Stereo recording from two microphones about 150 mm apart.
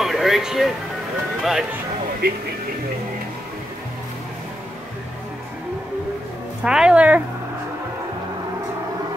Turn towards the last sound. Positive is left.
turn(degrees=-10)  # may be behind; listen again after turning